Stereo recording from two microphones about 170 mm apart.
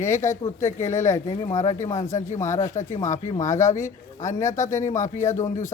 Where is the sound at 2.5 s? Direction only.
45° left (ahead or behind).